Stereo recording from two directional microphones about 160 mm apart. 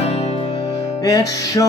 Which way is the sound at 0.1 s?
40° left (ahead or behind).